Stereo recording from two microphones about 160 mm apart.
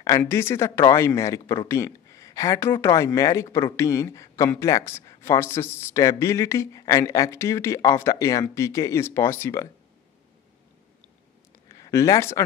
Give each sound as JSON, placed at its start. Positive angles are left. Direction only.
{"t": 0.2, "sound": "speech", "side_deg": 15}
{"t": 11.7, "sound": "speech", "side_deg": 20}